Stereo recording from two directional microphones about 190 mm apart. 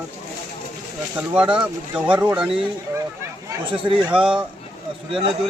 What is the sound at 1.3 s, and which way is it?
Speech, 5° right (ahead or behind).